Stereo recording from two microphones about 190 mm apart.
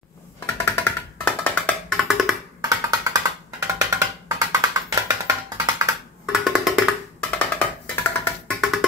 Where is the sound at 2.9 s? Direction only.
20° right (ahead or behind).